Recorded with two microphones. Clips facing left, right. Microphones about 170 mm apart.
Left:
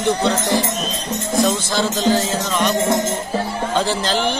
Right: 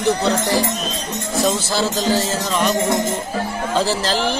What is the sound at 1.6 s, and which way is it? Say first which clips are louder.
Music: left 1 dB; 5° right (ahead or behind).